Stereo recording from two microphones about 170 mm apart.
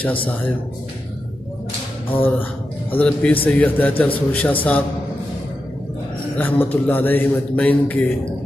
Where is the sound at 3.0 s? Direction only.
5° left (ahead or behind).